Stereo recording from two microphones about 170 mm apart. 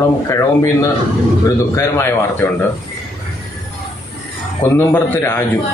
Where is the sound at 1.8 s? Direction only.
15° left (ahead or behind).